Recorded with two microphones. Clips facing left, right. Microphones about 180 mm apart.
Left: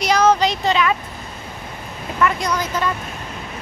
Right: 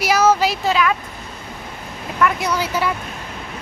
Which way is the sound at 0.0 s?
5° right (ahead or behind).